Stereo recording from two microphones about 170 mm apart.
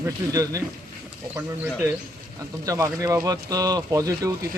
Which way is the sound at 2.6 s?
20° right (ahead or behind).